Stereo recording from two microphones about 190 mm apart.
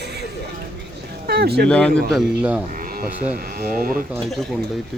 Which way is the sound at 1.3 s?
55° right (ahead or behind).